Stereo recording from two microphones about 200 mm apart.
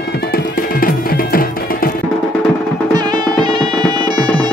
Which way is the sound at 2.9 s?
20° right (ahead or behind).